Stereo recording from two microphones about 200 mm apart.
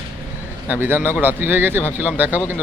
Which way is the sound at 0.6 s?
10° right (ahead or behind).